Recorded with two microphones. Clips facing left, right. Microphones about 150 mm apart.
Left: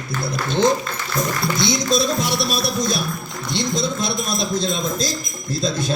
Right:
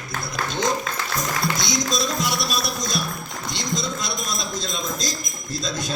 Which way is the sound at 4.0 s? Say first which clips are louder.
Left 6 dB; 55° left (ahead or behind).